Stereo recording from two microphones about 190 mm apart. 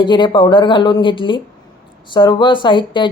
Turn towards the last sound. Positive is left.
turn(degrees=25)  # may be behind; listen again after turning